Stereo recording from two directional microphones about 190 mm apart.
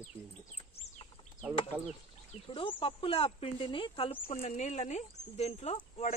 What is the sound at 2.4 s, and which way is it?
Speech, 30° left (ahead or behind).